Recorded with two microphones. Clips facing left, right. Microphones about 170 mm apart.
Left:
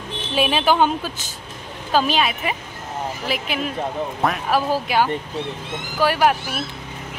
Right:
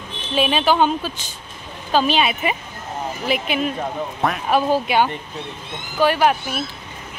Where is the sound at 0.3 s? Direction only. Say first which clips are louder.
Right 1 dB; 5° left (ahead or behind).